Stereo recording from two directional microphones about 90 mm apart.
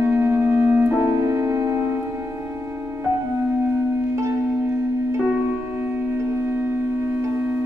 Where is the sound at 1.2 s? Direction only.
35° right (ahead or behind).